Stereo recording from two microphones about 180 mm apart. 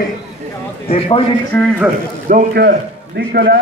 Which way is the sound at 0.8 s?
30° left (ahead or behind).